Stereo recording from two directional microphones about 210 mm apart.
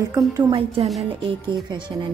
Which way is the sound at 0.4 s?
20° right (ahead or behind).